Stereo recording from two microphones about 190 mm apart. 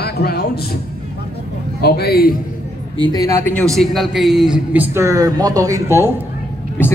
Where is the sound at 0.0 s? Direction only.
55° left (ahead or behind).